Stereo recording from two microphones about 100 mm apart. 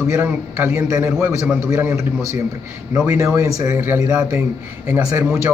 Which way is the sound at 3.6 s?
20° right (ahead or behind).